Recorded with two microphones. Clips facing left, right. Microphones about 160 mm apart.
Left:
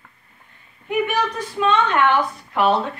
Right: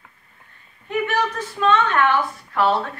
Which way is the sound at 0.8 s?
15° left (ahead or behind).